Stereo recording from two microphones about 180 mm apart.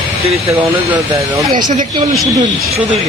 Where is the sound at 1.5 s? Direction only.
40° right (ahead or behind).